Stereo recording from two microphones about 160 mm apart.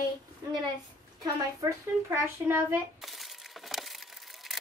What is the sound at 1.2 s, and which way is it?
A child's voice, 20° right (ahead or behind).